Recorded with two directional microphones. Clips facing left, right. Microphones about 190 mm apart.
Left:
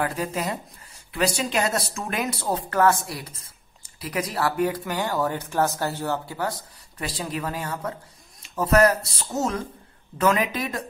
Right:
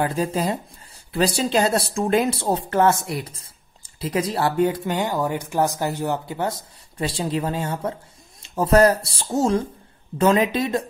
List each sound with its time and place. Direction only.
0.0 s speech: 25° right (ahead or behind)